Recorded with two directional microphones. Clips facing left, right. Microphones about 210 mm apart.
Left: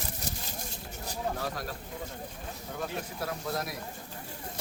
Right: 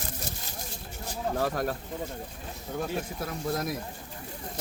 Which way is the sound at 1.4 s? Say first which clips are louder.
Right 7 dB; 50° right (ahead or behind).